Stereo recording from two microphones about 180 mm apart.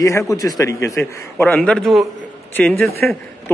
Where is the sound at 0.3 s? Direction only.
20° left (ahead or behind).